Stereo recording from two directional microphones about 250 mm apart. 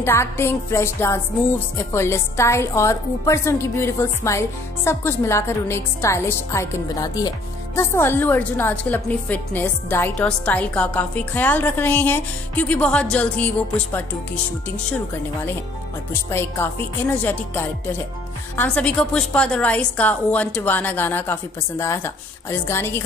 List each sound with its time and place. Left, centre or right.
0.0 s a woman's voice: centre
16.1 s a woman's voice: centre